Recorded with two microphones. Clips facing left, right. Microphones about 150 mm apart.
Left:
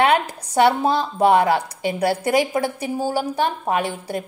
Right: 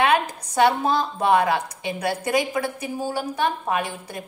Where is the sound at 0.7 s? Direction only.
30° left (ahead or behind).